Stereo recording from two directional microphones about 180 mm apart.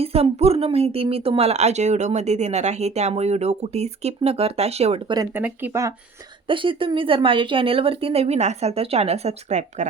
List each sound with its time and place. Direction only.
0.0 s speech: 35° right (ahead or behind)
5.3 s speech: 10° right (ahead or behind)
6.5 s speech: 30° right (ahead or behind)